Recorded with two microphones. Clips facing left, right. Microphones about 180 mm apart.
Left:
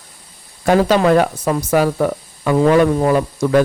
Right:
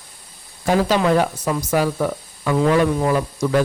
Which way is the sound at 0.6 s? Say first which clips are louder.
Left 4 dB; 55° left (ahead or behind).